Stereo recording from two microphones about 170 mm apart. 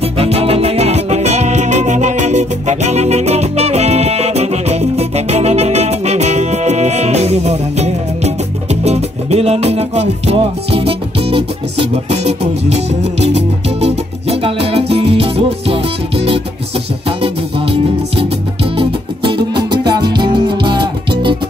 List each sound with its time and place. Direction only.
0.0 s music: 35° right (ahead or behind)